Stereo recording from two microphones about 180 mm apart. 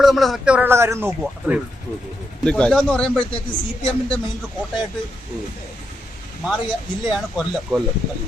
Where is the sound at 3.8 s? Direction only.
30° left (ahead or behind).